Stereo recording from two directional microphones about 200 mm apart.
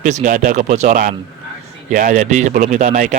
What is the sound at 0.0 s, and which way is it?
Speech, 40° right (ahead or behind).